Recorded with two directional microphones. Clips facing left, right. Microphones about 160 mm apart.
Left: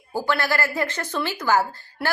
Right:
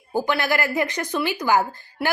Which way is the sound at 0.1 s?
15° right (ahead or behind).